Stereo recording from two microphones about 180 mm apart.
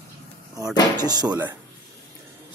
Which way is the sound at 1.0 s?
20° right (ahead or behind).